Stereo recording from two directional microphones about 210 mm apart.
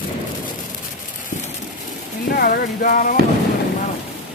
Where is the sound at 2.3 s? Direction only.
45° left (ahead or behind).